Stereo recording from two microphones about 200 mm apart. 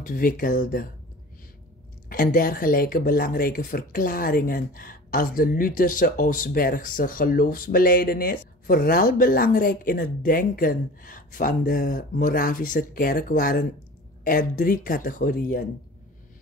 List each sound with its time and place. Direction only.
0.0 s speech: 45° left (ahead or behind)
2.0 s speech: 45° left (ahead or behind)